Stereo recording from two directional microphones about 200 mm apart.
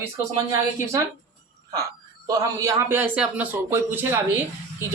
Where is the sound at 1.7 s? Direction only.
15° right (ahead or behind).